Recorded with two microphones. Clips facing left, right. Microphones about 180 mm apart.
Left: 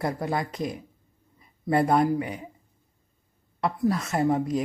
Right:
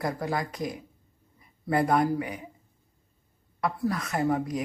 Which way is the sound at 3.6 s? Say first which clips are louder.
Left 3 dB; 25° left (ahead or behind).